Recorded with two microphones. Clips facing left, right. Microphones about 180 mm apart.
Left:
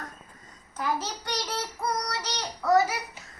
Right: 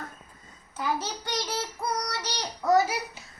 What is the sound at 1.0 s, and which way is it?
Child singing, 5° right (ahead or behind).